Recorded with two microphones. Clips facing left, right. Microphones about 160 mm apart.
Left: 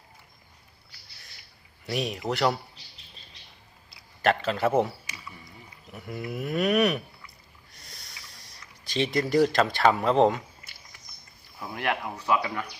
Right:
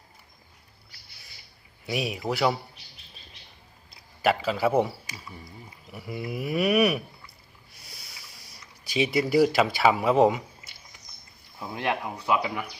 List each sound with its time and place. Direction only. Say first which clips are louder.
1.9 s a man's voice: even; 5° right (ahead or behind)
4.2 s a man's voice: even; 5° right (ahead or behind)
5.0 s speech: right 2 dB; 40° right (ahead or behind)
5.9 s speech: right 1 dB; 5° right (ahead or behind)
7.7 s a sound: even; 5° right (ahead or behind)
8.8 s speech: right 2 dB; 10° right (ahead or behind)
11.6 s speech: right 1 dB; 20° right (ahead or behind)